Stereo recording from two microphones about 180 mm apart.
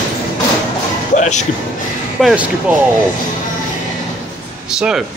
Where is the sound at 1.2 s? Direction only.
40° left (ahead or behind).